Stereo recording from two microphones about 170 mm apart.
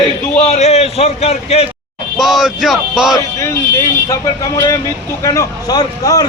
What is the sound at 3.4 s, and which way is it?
Speech, 15° left (ahead or behind).